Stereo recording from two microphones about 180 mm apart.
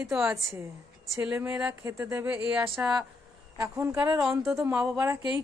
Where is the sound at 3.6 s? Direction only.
15° right (ahead or behind).